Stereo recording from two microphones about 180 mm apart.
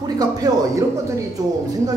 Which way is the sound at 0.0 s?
20° right (ahead or behind).